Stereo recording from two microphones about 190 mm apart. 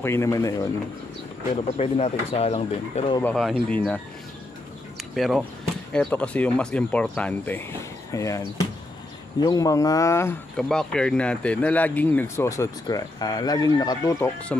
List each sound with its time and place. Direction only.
0.0 s speech: 15° left (ahead or behind)
1.7 s speech: 35° left (ahead or behind)
3.2 s speech: 10° left (ahead or behind)
5.1 s speech: centre (ahead or behind)
10.5 s speech: 5° left (ahead or behind); by 14.3 s 20° left (ahead or behind)